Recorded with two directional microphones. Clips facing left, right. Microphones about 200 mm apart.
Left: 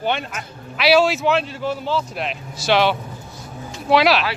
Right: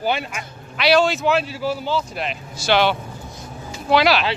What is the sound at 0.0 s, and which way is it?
A man's voice, 5° right (ahead or behind).